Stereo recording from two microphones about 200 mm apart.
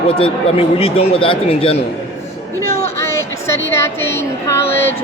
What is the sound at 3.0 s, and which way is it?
Speech, 15° left (ahead or behind).